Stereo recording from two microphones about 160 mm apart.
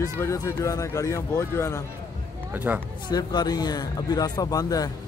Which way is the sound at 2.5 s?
10° right (ahead or behind).